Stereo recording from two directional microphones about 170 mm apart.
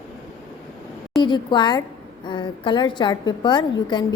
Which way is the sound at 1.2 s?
25° left (ahead or behind).